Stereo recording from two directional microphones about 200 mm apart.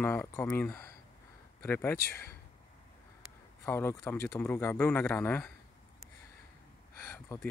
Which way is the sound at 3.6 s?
10° left (ahead or behind).